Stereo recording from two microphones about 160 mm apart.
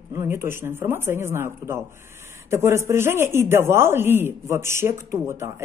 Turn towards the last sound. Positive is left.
turn(degrees=-15)  # may be behind; listen again after turning